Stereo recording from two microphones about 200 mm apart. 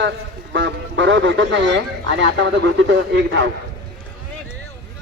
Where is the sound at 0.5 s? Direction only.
65° right (ahead or behind).